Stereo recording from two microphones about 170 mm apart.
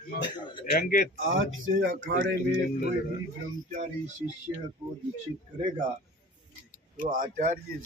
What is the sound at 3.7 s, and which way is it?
Speech, 45° right (ahead or behind).